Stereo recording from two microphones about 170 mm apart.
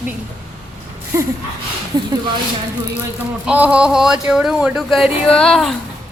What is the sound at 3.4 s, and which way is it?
Speech, 10° right (ahead or behind).